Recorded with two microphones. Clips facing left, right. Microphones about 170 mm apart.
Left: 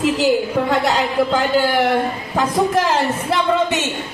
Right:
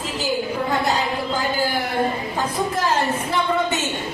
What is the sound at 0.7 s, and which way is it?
Speech, 80° left.